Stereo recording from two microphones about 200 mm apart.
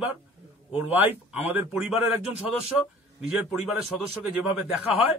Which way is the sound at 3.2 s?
5° right (ahead or behind).